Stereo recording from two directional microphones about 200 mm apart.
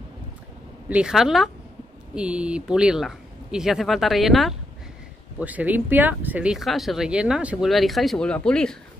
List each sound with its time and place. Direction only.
0.8 s speech: 5° right (ahead or behind)